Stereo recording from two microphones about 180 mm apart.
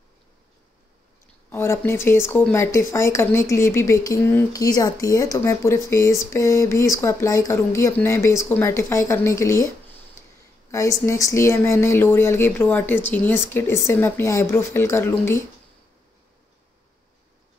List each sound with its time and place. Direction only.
1.5 s speech: 15° left (ahead or behind)
10.7 s speech: 15° left (ahead or behind)